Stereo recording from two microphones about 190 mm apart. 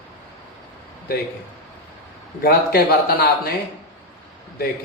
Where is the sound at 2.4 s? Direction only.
55° left (ahead or behind).